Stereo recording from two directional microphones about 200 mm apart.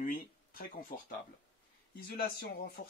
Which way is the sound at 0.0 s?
45° left (ahead or behind).